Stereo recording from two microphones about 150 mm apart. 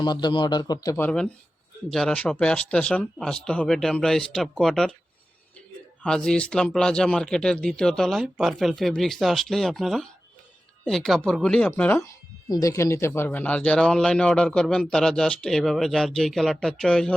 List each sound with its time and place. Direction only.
0.0 s a man's voice: 30° left (ahead or behind)
1.0 s speech: 5° left (ahead or behind)
6.0 s speech: 5° left (ahead or behind)
12.5 s speech: 20° left (ahead or behind); by 17.2 s 5° left (ahead or behind)